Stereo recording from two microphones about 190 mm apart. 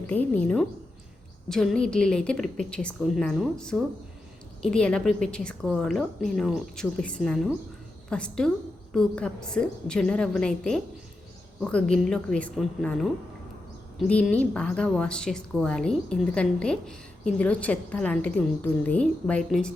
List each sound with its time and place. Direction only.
0.1 s a woman's voice: 10° left (ahead or behind)